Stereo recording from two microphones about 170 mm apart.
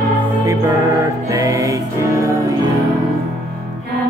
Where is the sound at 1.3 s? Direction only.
20° right (ahead or behind).